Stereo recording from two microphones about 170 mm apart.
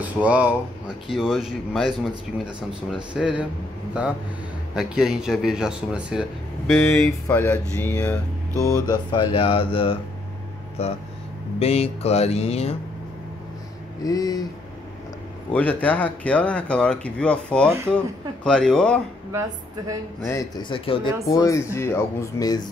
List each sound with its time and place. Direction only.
0.0 s speech: 10° right (ahead or behind)
4.7 s speech: 5° right (ahead or behind)
6.8 s speech: 5° left (ahead or behind)
8.7 s speech: 25° left (ahead or behind)
14.0 s speech: 20° left (ahead or behind)
15.5 s speech: 10° left (ahead or behind)
20.6 s speech: 30° left (ahead or behind)
21.3 s speech: 20° left (ahead or behind)